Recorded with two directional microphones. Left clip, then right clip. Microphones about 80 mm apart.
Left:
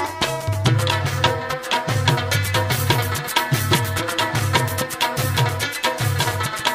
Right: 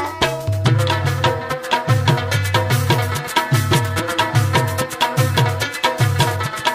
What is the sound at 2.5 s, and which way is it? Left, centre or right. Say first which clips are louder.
Music: right 3 dB; centre.